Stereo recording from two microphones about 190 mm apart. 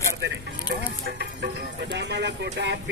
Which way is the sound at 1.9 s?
65° right (ahead or behind).